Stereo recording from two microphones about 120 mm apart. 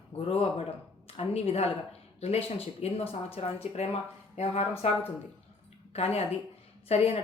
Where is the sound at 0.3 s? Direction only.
60° left (ahead or behind).